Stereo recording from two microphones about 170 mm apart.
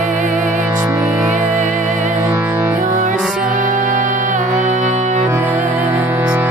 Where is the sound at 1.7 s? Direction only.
45° right (ahead or behind).